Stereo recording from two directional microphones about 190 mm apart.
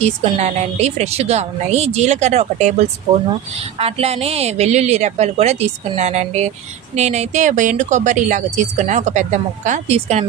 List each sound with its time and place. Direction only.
0.0 s a woman's voice: 35° right (ahead or behind)